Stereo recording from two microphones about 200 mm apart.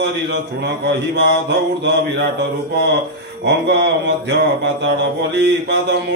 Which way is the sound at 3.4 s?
60° right (ahead or behind).